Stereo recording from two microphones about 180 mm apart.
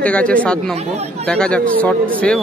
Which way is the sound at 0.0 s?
5° left (ahead or behind).